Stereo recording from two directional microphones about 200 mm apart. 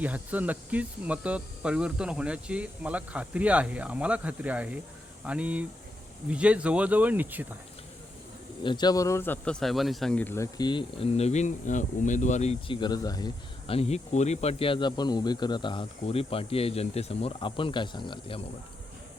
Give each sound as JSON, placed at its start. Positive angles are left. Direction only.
{"t": 0.0, "sound": "speech", "side_deg": -10}
{"t": 8.6, "sound": "a man's voice", "side_deg": 20}